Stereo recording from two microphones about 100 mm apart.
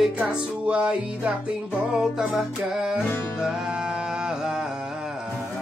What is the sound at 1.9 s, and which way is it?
Speech, 5° right (ahead or behind).